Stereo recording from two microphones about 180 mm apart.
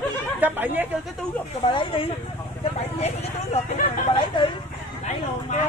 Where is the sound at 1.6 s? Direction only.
30° left (ahead or behind).